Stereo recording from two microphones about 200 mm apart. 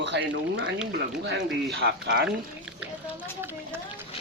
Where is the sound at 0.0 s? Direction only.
60° right (ahead or behind).